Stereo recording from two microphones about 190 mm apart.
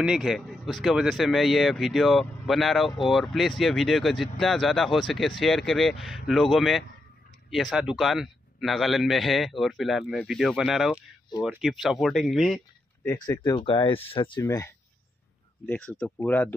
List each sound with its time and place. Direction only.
0.0 s speech: centre (ahead or behind)
13.0 s speech: 15° left (ahead or behind)
15.6 s speech: 5° left (ahead or behind)